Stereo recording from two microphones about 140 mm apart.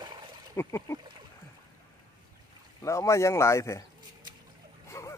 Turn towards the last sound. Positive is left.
turn(degrees=20)  # may be behind; listen again after turning